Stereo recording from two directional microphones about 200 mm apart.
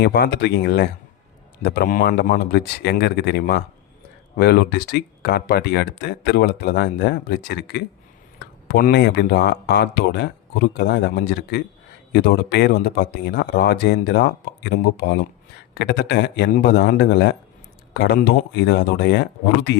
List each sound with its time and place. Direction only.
0.0 s speech: 55° left (ahead or behind)